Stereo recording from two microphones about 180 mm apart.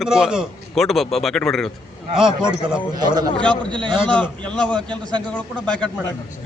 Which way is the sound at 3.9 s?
5° left (ahead or behind).